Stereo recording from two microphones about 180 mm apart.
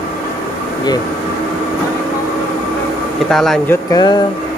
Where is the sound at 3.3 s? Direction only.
Centre (ahead or behind).